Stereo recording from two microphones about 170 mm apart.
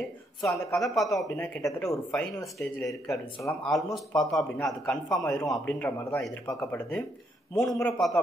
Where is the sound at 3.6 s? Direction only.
Centre (ahead or behind).